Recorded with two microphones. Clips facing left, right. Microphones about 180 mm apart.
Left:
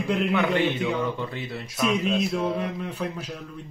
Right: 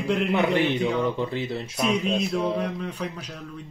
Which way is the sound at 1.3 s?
25° right (ahead or behind).